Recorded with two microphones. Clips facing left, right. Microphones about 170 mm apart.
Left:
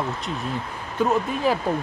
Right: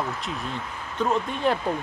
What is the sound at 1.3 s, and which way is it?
Speech, 5° left (ahead or behind).